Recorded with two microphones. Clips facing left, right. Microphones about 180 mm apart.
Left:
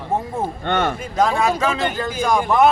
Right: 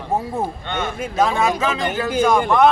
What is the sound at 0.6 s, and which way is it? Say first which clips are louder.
Speech: left 5 dB; 60° left (ahead or behind).